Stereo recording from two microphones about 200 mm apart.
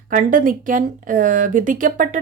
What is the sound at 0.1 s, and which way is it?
Speech, 40° right (ahead or behind).